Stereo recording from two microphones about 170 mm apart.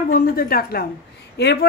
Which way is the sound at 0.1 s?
60° left (ahead or behind).